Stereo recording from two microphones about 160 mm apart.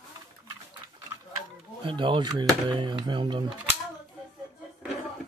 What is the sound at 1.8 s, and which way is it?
Speech, 30° right (ahead or behind).